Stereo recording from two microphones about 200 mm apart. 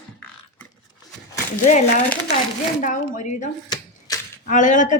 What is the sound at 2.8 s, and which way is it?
A woman's voice, 40° left (ahead or behind).